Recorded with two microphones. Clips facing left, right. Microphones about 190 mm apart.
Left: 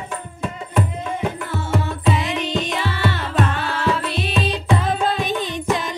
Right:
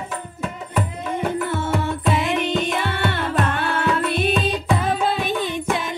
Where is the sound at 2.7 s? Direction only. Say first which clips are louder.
Even; 55° right (ahead or behind).